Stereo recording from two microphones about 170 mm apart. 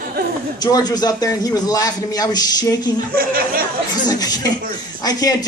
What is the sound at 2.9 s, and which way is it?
Speech, 60° right (ahead or behind).